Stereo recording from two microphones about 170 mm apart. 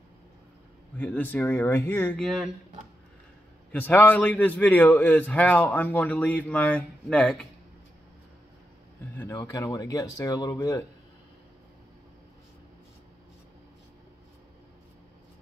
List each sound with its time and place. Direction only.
0.9 s a man's voice: 10° left (ahead or behind)
3.7 s a man's voice: 10° left (ahead or behind)
9.1 s a sound: 15° left (ahead or behind)
9.4 s speech: 20° left (ahead or behind)